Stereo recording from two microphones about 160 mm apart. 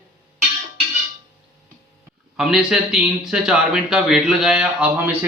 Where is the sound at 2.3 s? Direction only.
5° right (ahead or behind).